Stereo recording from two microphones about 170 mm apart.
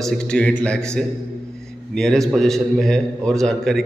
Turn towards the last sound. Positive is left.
turn(degrees=0)  # may be behind; listen again after turning